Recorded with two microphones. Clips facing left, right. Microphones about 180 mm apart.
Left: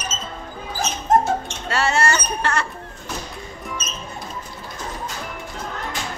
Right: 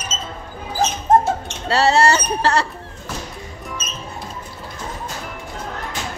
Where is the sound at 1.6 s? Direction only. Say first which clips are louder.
Right 7 dB; 35° right (ahead or behind).